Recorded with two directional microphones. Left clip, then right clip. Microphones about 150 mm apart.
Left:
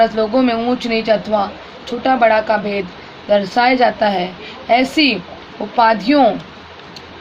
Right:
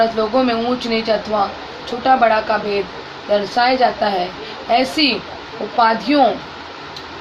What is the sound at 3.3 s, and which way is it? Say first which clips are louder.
A woman's voice: left 2 dB; 65° left (ahead or behind).